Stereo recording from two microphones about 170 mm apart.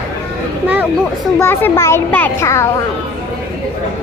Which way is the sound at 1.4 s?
15° left (ahead or behind).